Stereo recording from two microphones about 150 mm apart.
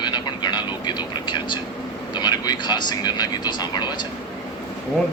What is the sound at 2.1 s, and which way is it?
Speech, 30° left (ahead or behind).